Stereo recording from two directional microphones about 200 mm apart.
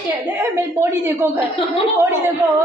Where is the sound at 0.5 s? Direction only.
10° right (ahead or behind).